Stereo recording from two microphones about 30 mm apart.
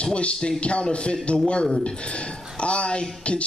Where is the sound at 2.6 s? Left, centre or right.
Left.